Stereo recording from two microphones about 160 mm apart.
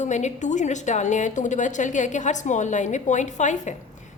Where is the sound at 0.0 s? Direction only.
45° left (ahead or behind).